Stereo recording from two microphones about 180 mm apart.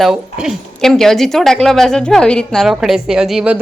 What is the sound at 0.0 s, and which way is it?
A woman's voice, 5° right (ahead or behind).